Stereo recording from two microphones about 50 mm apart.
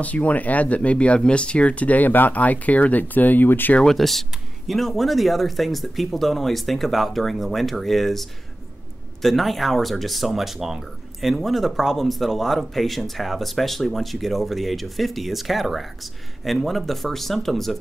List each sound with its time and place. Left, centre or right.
0.0 s speech: left
3.8 s speech: centre